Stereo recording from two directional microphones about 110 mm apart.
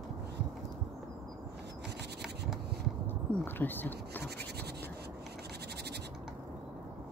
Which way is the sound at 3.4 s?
15° left (ahead or behind).